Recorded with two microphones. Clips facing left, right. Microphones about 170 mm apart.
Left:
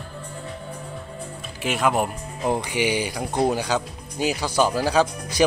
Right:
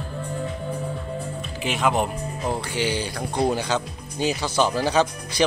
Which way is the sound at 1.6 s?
Centre (ahead or behind).